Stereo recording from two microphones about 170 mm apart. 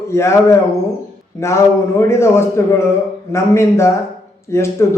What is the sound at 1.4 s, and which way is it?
A man's voice, 15° left (ahead or behind).